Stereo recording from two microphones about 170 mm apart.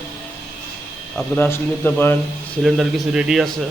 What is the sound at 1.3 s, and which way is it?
Speech, 10° left (ahead or behind).